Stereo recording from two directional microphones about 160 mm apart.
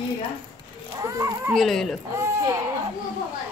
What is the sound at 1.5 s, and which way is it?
Speech, centre (ahead or behind).